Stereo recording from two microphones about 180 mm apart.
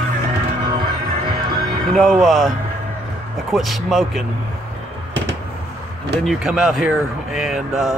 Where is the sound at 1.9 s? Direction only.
Centre (ahead or behind).